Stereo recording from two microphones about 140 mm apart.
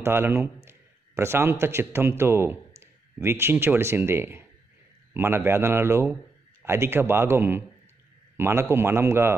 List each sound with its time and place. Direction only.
0.0 s a man's voice: 15° right (ahead or behind)